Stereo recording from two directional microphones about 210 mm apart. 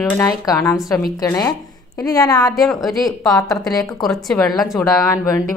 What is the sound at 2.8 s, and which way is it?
A woman's voice, centre (ahead or behind).